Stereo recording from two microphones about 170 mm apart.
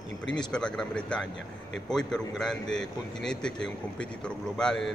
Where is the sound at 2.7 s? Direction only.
90° left.